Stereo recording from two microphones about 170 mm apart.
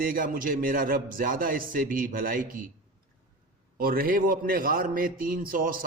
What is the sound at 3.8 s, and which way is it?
A man's voice, 60° right (ahead or behind).